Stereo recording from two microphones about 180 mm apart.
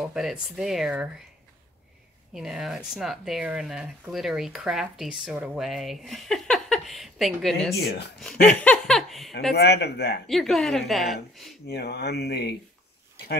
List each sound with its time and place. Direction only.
0.0 s speech: 5° right (ahead or behind)
2.3 s speech: 5° right (ahead or behind)
9.5 s speech: 65° left (ahead or behind)
10.2 s speech: centre (ahead or behind)
11.6 s speech: 65° left (ahead or behind)